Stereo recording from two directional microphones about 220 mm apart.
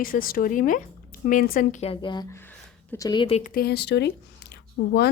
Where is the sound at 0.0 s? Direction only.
40° left (ahead or behind).